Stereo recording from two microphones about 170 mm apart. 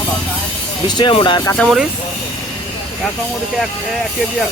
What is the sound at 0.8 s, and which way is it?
Speech, 25° left (ahead or behind).